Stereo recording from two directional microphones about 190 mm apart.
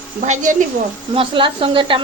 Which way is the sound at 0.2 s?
40° right (ahead or behind).